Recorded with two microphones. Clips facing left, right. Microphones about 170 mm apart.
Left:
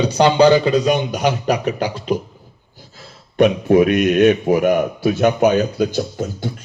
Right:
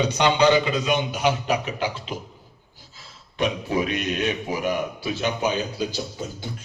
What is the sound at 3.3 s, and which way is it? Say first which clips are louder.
A man's voice: left 11 dB; 55° left (ahead or behind).